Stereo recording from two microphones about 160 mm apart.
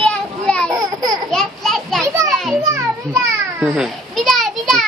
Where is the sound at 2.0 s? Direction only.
20° right (ahead or behind).